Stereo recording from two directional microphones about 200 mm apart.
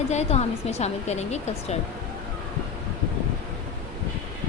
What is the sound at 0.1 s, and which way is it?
Speech, 35° left (ahead or behind).